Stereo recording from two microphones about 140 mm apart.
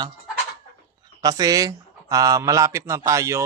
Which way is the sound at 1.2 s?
25° right (ahead or behind).